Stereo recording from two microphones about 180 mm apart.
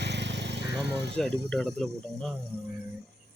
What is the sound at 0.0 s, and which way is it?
Vehicle, 70° right (ahead or behind).